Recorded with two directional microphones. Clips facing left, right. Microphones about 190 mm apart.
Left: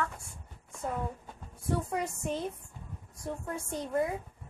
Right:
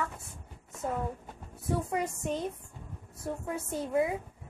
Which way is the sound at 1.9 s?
Centre (ahead or behind).